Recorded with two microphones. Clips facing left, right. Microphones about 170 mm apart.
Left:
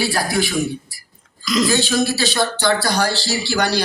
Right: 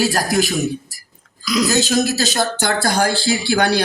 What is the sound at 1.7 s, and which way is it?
Speech, 45° right (ahead or behind).